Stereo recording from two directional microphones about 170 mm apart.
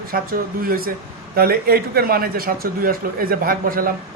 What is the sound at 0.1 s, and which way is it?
A man's voice, 60° right (ahead or behind).